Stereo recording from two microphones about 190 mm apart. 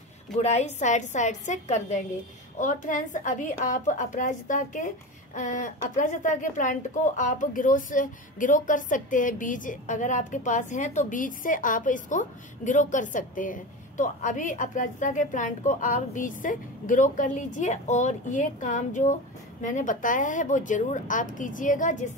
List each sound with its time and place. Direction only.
0.4 s a woman's voice: 35° left (ahead or behind)